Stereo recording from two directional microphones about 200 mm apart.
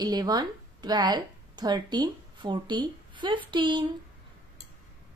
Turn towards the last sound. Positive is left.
turn(degrees=-25)  # may be behind; listen again after turning